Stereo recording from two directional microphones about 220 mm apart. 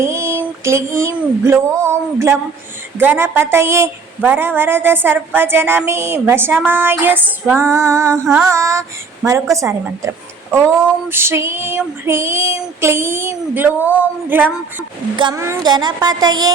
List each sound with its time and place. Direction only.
0.0 s a sound: 10° right (ahead or behind)
1.9 s a woman's voice: 10° right (ahead or behind)
11.1 s a woman's voice: 10° right (ahead or behind)
15.1 s speech: 20° right (ahead or behind)